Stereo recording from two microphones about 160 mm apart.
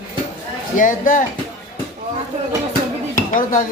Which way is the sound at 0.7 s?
55° left (ahead or behind).